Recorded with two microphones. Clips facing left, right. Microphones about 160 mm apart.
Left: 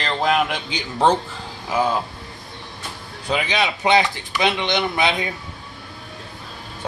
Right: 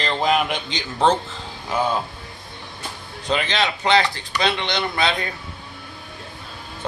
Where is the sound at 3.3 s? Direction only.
10° left (ahead or behind).